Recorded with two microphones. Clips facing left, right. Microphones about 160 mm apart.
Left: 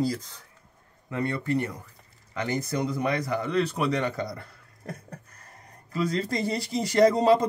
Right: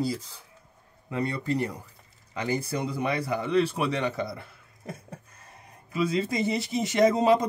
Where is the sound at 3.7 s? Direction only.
5° right (ahead or behind).